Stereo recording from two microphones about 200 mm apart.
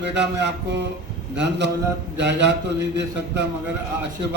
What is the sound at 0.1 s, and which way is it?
A man's voice, 60° right (ahead or behind).